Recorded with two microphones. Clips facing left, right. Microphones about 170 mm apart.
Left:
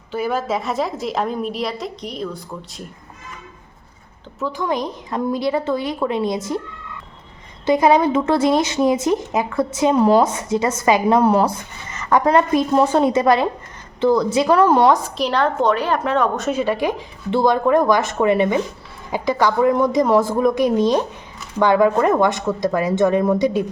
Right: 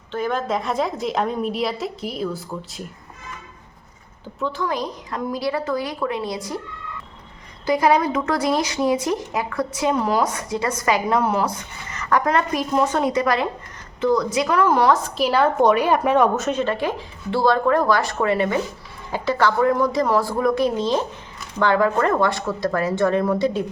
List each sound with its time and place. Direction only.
0.1 s a woman's voice: 10° left (ahead or behind)
4.5 s speech: 20° left (ahead or behind)
7.6 s speech: 25° left (ahead or behind)
15.2 s a woman's voice: 5° right (ahead or behind)
16.4 s speech: 5° left (ahead or behind)